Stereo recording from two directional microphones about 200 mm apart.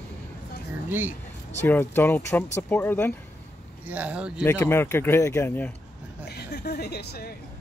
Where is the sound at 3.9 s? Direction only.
5° right (ahead or behind).